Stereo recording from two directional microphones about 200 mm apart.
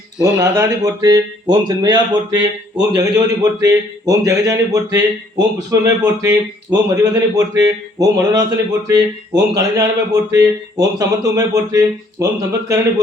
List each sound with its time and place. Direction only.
0.3 s a man's voice: 10° right (ahead or behind)